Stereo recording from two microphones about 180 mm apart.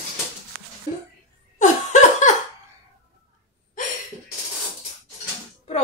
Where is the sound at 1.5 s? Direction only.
45° left (ahead or behind).